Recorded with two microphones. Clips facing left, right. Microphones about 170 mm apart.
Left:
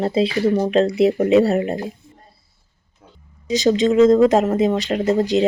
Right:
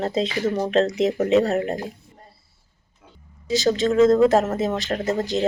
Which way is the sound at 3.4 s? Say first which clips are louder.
Left 4 dB; 20° left (ahead or behind).